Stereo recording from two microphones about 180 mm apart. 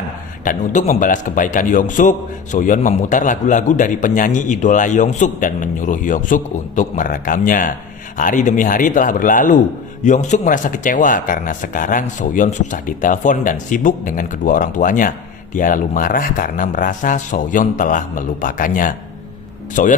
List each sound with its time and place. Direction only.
0.5 s speech: 45° left (ahead or behind)